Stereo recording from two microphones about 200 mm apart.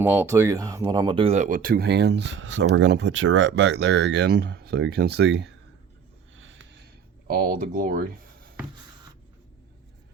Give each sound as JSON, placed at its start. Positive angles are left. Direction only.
{"t": 0.0, "sound": "speech", "side_deg": -10}
{"t": 6.3, "sound": "a sound", "side_deg": -75}
{"t": 7.3, "sound": "speech", "side_deg": -50}